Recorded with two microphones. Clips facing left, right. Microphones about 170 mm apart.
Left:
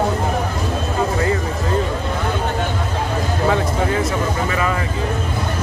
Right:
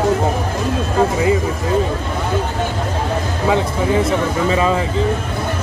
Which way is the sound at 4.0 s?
25° right (ahead or behind).